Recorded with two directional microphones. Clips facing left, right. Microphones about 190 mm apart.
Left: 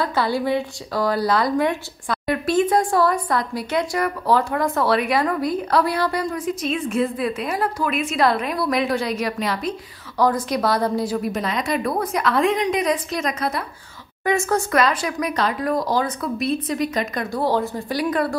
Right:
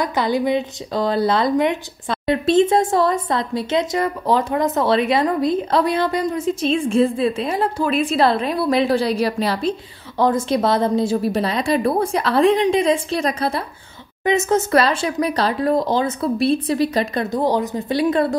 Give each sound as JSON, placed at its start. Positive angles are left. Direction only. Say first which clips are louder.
{"t": 0.0, "sound": "a woman's voice", "louder": "right 2 dB", "side_deg": -20}